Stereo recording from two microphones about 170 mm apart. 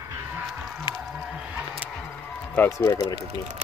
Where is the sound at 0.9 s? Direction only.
25° left (ahead or behind).